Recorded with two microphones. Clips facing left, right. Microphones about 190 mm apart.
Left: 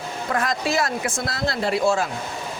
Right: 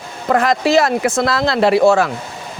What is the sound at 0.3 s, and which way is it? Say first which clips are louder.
Speech: right 10 dB; 80° right.